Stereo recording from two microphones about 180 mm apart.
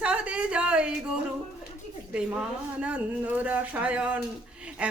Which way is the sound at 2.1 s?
5° right (ahead or behind).